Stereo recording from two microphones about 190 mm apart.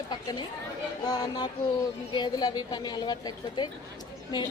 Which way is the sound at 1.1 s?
20° left (ahead or behind).